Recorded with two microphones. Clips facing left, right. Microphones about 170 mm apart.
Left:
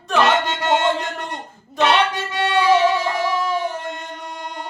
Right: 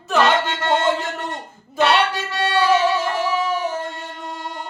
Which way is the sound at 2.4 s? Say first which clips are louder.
Even; 15° left (ahead or behind).